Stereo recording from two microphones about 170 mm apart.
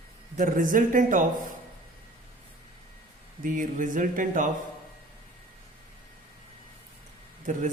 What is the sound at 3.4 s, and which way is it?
Speech, 50° right (ahead or behind).